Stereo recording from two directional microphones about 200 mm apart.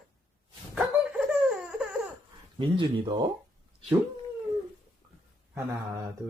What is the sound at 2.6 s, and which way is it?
Speech, 25° right (ahead or behind).